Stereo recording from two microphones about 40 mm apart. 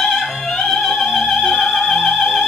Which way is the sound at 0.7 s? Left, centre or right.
Centre.